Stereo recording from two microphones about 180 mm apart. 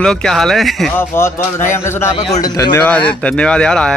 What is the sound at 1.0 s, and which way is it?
Speech, 15° left (ahead or behind).